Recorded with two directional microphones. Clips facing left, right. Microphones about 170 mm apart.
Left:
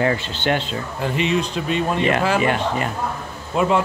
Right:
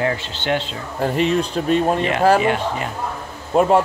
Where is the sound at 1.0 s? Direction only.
45° right (ahead or behind).